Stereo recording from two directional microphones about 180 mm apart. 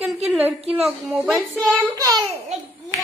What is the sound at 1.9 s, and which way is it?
Speech, 20° right (ahead or behind).